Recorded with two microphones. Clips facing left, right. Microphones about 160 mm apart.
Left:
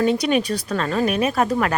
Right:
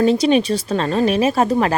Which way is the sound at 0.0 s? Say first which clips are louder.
Right 4 dB; 30° right (ahead or behind).